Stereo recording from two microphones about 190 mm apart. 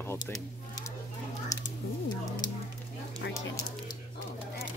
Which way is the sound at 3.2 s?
65° left (ahead or behind).